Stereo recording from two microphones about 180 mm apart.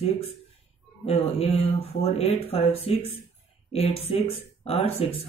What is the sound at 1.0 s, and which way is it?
Speech, 35° left (ahead or behind).